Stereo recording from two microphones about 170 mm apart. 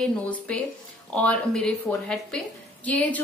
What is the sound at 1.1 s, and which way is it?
A woman's voice, 10° left (ahead or behind).